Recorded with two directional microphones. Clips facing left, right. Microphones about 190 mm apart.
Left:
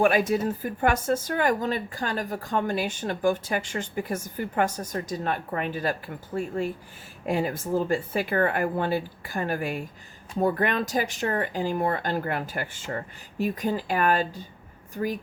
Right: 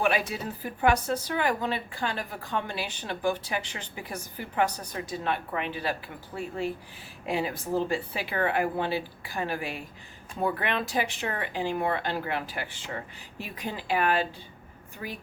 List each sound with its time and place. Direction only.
0.0 s speech: 45° left (ahead or behind)